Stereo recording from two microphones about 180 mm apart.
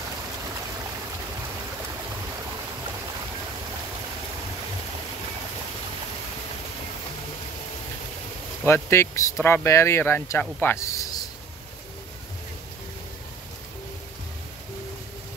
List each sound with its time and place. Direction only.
8.6 s speech: 15° left (ahead or behind)